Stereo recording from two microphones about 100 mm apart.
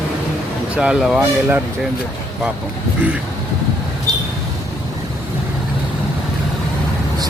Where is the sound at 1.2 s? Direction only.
20° right (ahead or behind).